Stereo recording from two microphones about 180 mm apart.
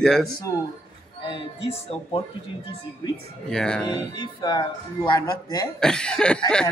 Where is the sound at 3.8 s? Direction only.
20° left (ahead or behind).